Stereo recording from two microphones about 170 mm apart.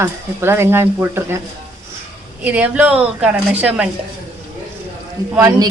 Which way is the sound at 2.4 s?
10° right (ahead or behind).